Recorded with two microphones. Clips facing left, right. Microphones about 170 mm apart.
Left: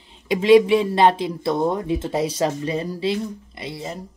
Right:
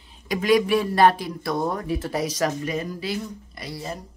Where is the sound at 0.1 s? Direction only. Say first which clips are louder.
Left 6 dB; 25° left (ahead or behind).